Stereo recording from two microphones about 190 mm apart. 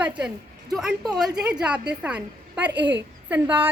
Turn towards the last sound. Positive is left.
turn(degrees=-10)  # may be behind; listen again after turning